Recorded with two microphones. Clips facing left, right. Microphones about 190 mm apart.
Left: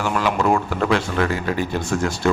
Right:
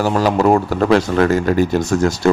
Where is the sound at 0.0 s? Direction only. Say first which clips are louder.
Right 6 dB; 35° right (ahead or behind).